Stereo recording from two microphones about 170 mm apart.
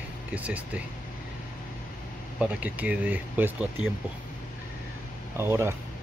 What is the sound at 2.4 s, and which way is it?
Speech, 10° right (ahead or behind).